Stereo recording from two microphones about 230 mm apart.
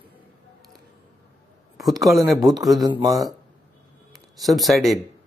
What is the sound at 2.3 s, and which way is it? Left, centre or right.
Speech, centre.